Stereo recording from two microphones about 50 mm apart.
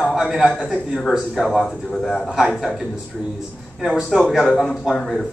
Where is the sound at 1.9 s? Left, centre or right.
Centre.